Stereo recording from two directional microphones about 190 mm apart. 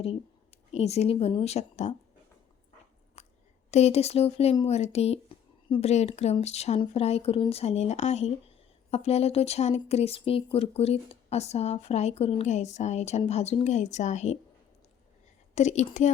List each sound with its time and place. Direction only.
0.7 s speech: 35° left (ahead or behind)
3.2 s a sound: 35° left (ahead or behind)
3.7 s speech: 35° left (ahead or behind)
15.5 s speech: 40° left (ahead or behind)